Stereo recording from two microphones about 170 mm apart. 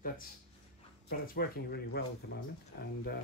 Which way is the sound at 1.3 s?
65° left (ahead or behind).